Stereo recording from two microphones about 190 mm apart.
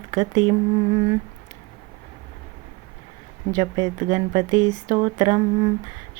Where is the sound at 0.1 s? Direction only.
25° right (ahead or behind).